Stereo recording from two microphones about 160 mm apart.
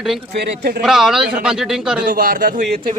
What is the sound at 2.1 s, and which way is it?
Speech, 60° right (ahead or behind).